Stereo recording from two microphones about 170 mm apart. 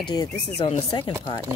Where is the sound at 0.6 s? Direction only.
30° left (ahead or behind).